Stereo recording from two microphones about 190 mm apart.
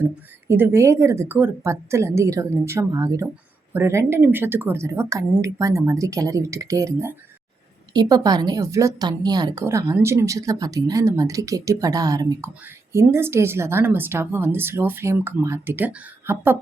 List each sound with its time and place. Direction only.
0.0 s speech: 10° right (ahead or behind)